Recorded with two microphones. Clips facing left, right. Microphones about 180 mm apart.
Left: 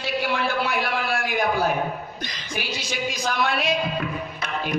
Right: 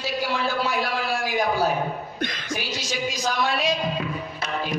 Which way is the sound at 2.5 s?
60° left (ahead or behind).